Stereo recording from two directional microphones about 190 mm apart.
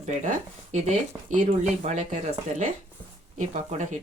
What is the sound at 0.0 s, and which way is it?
Speech, 40° right (ahead or behind).